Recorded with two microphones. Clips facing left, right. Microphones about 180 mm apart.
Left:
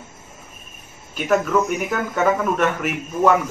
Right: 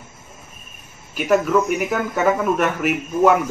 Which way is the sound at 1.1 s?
5° right (ahead or behind).